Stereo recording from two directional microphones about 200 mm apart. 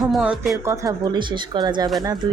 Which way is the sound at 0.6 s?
15° right (ahead or behind).